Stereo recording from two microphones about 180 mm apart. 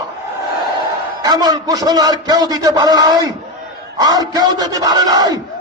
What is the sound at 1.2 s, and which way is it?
A man's voice, 20° right (ahead or behind).